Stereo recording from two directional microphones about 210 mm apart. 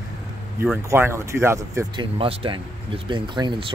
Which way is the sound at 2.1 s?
25° right (ahead or behind).